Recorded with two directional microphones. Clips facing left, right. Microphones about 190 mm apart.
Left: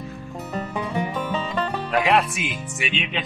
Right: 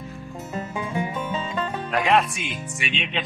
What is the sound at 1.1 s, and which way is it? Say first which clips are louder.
Music: left 2 dB; 65° left (ahead or behind).